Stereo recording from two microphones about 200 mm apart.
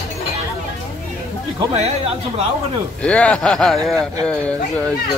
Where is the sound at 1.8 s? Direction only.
30° right (ahead or behind).